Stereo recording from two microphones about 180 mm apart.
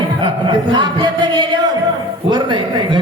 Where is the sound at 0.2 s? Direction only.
25° right (ahead or behind).